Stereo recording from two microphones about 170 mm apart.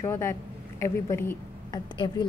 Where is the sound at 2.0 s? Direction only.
25° left (ahead or behind).